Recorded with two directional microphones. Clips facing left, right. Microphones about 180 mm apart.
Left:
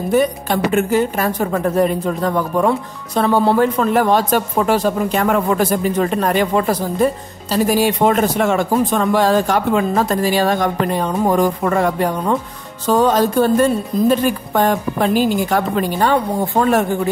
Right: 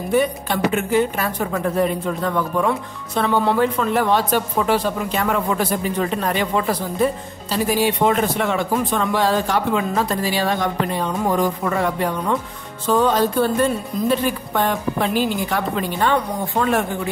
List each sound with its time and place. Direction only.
0.1 s a woman's voice: 45° left (ahead or behind)